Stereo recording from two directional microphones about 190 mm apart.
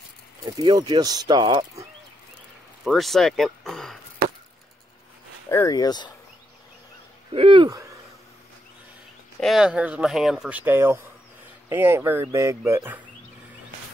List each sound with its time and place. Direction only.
0.5 s speech: 20° right (ahead or behind)
2.8 s speech: centre (ahead or behind)
5.5 s speech: 15° left (ahead or behind)
7.3 s speech: 25° right (ahead or behind)
9.4 s speech: centre (ahead or behind)